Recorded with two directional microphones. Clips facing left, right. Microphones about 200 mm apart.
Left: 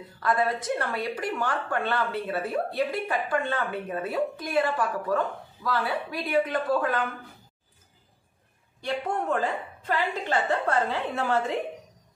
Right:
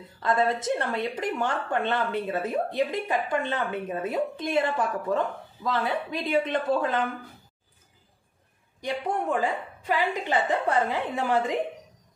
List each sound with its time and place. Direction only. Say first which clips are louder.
0.2 s speech: right 1 dB; 25° right (ahead or behind)
8.8 s a woman's voice: even; 15° right (ahead or behind)